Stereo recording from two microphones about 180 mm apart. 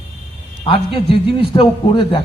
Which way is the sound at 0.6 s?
30° left (ahead or behind).